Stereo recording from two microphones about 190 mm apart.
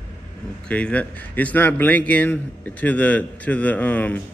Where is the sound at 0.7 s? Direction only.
5° left (ahead or behind).